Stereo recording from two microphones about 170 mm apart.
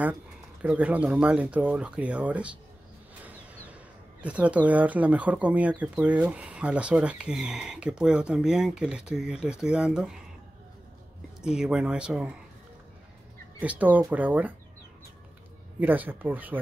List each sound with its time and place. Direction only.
0.6 s speech: 10° right (ahead or behind)
4.2 s speech: 10° right (ahead or behind)
11.4 s speech: 5° right (ahead or behind)
13.6 s speech: 10° right (ahead or behind)
15.8 s speech: 10° right (ahead or behind)